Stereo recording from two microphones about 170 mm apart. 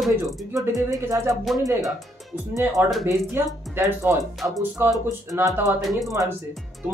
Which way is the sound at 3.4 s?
15° right (ahead or behind).